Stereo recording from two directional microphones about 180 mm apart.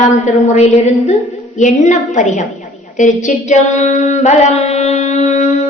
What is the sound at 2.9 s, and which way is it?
Singing, 45° left (ahead or behind).